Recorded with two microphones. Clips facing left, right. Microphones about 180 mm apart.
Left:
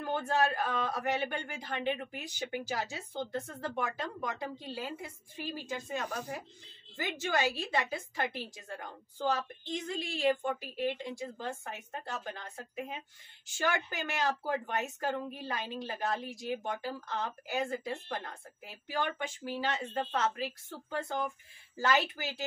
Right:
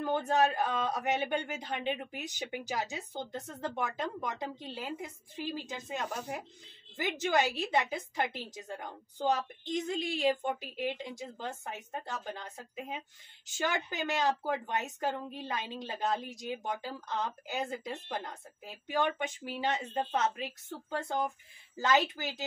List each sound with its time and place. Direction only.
0.0 s a man's voice: 20° right (ahead or behind)
13.5 s a man's voice: 20° right (ahead or behind)
21.7 s a man's voice: 20° right (ahead or behind)